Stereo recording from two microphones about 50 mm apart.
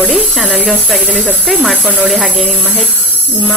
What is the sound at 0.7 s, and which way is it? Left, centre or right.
Speech, right.